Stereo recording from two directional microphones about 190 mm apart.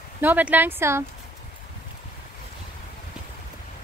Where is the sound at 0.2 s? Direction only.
10° right (ahead or behind).